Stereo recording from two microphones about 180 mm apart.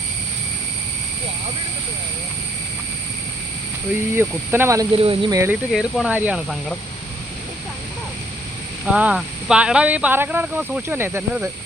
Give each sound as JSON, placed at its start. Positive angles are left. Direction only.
{"t": 4.1, "sound": "speech", "side_deg": -10}
{"t": 4.9, "sound": "speech", "side_deg": -30}
{"t": 5.3, "sound": "speech", "side_deg": -15}
{"t": 5.7, "sound": "speech", "side_deg": -5}
{"t": 8.9, "sound": "speech", "side_deg": -5}